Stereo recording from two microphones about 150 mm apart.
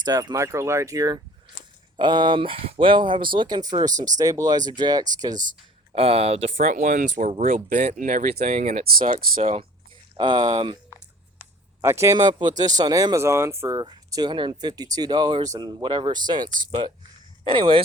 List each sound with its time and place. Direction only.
0.0 s speech: 25° right (ahead or behind)
5.9 s speech: 40° right (ahead or behind)
6.6 s speech: 60° right (ahead or behind)
8.4 s speech: 45° right (ahead or behind)
8.8 s speech: 85° right
9.4 s speech: 40° right (ahead or behind)
10.2 s speech: 30° right (ahead or behind)
11.8 s speech: 20° right (ahead or behind)
12.1 s speech: 30° right (ahead or behind)